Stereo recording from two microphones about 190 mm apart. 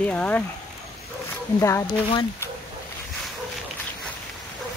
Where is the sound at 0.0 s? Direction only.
10° left (ahead or behind).